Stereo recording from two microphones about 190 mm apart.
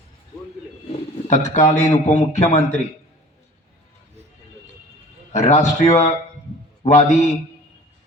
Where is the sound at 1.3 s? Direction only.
40° left (ahead or behind).